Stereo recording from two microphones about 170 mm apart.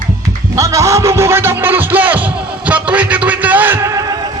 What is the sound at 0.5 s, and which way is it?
Music, 20° right (ahead or behind).